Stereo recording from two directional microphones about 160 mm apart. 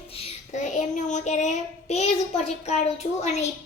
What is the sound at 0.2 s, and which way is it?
Child singing, 50° left (ahead or behind).